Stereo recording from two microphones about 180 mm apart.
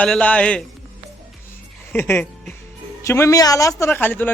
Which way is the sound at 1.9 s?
15° left (ahead or behind).